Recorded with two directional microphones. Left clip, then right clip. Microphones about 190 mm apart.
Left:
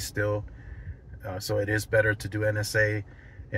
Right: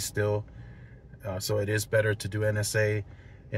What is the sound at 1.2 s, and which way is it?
Speech, 15° right (ahead or behind).